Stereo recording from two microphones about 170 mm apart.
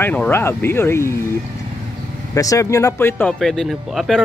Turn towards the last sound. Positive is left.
turn(degrees=0)  # may be behind; listen again after turning